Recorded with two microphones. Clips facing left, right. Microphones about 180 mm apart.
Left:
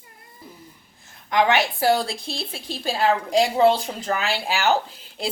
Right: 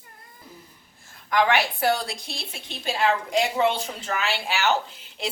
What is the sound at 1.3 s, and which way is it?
A woman's voice, 25° left (ahead or behind).